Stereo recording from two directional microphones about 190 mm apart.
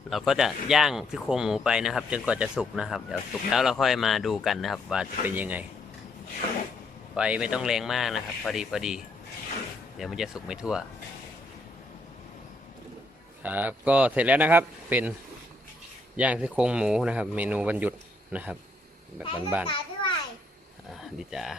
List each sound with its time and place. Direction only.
0.1 s speech: centre (ahead or behind)
7.2 s speech: 5° right (ahead or behind)
10.0 s speech: centre (ahead or behind)
13.4 s speech: 10° right (ahead or behind)
16.1 s speech: 5° right (ahead or behind)
19.6 s children playing: 25° left (ahead or behind)
21.2 s speech: centre (ahead or behind)